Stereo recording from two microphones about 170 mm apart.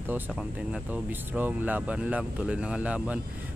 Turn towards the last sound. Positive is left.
turn(degrees=-10)  # may be behind; listen again after turning